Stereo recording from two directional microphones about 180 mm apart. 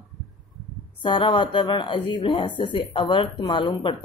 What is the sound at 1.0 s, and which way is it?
Speech, 25° left (ahead or behind).